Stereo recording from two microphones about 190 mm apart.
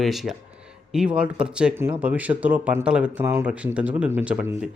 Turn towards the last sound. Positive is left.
turn(degrees=-10)  # may be behind; listen again after turning